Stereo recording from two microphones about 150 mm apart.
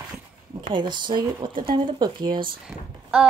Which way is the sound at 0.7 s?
30° right (ahead or behind).